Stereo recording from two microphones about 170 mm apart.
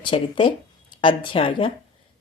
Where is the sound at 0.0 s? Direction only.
30° left (ahead or behind).